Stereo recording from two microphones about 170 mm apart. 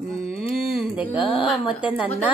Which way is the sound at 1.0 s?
30° left (ahead or behind).